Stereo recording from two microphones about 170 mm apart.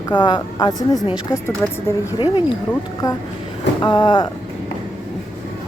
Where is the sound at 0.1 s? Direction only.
25° left (ahead or behind).